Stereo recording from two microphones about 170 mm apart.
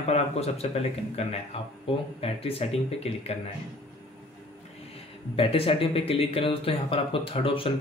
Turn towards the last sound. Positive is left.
turn(degrees=30)  # may be behind; listen again after turning